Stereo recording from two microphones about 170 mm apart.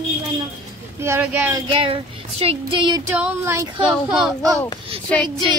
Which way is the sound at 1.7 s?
30° right (ahead or behind).